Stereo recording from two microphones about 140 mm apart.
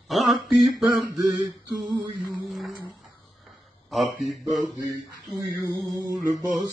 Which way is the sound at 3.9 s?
Centre (ahead or behind).